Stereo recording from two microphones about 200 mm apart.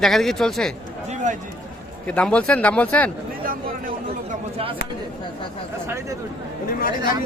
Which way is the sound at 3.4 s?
45° right (ahead or behind).